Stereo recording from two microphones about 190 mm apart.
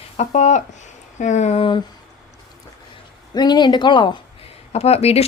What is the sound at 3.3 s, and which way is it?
Speech, 20° left (ahead or behind).